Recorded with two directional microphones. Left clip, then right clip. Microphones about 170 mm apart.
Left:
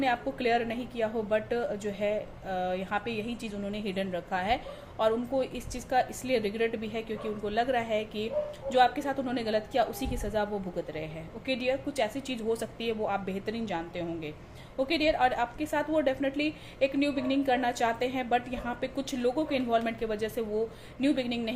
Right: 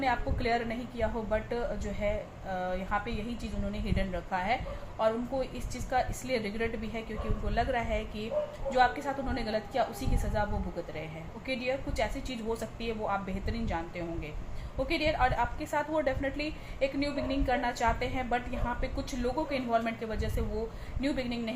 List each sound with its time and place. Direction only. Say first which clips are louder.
0.0 s a woman's voice: left 2 dB; 50° left (ahead or behind)
11.4 s a woman's voice: left 3 dB; 50° left (ahead or behind)